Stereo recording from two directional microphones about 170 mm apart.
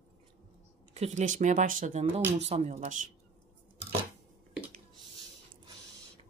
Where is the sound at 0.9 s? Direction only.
45° right (ahead or behind).